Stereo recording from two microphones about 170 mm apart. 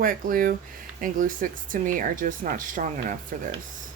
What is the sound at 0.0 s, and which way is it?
Speech, 55° right (ahead or behind).